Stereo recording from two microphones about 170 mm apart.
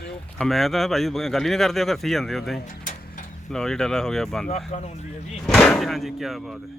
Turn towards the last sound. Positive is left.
turn(degrees=0)  # may be behind; listen again after turning